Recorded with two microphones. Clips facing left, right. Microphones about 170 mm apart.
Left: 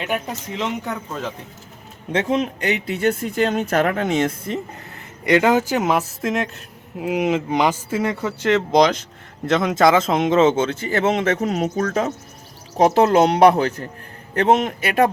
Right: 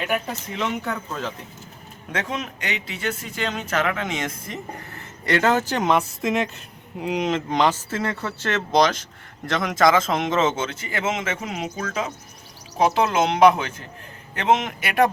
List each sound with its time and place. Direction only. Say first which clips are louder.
0.5 s a man's voice: left 1 dB; 25° left (ahead or behind)
2.1 s speech: left 8 dB; 30° left (ahead or behind)
2.8 s speech: left 9 dB; 55° left (ahead or behind); by 4.6 s 30° left (ahead or behind)
5.2 s a man's voice: left 4 dB; 15° left (ahead or behind); by 14.9 s 30° left (ahead or behind)